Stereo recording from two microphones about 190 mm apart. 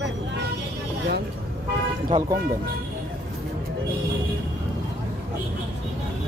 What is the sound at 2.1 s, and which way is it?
Speech, 20° right (ahead or behind).